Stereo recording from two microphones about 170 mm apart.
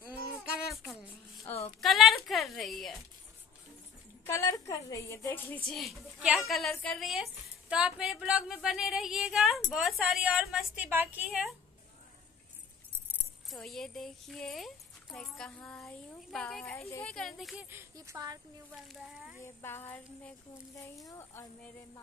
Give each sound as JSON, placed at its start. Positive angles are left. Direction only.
{"t": 1.8, "sound": "speech", "side_deg": 0}
{"t": 4.3, "sound": "a woman's voice", "side_deg": 15}
{"t": 13.5, "sound": "speech", "side_deg": 0}
{"t": 17.6, "sound": "speech", "side_deg": -15}
{"t": 18.9, "sound": "speech", "side_deg": -5}
{"t": 19.4, "sound": "a woman's voice", "side_deg": 15}